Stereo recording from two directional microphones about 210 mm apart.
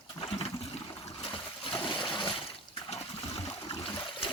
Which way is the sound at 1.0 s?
25° left (ahead or behind).